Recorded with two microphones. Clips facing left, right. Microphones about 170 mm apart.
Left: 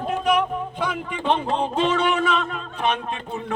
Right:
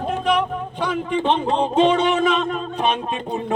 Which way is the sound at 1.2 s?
25° right (ahead or behind).